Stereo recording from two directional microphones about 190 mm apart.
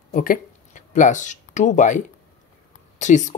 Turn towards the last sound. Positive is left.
turn(degrees=40)  # may be behind; listen again after turning